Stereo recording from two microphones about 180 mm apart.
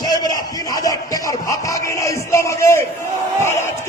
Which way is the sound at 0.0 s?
20° left (ahead or behind).